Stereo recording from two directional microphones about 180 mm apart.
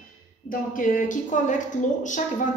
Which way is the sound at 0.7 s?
45° left (ahead or behind).